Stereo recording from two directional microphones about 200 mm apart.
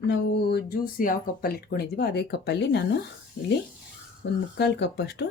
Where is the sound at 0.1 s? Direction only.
50° left (ahead or behind).